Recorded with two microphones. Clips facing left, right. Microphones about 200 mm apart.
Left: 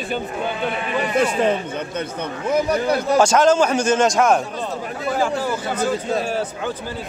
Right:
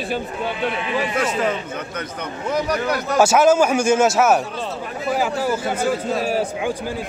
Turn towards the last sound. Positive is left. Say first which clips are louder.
# right 1 dB
turn(degrees=-10)  # may be behind; listen again after turning